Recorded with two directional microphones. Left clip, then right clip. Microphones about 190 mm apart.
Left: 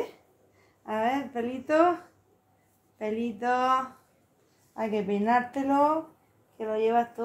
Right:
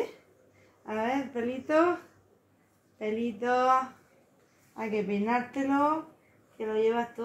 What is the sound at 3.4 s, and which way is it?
Speech, 30° left (ahead or behind).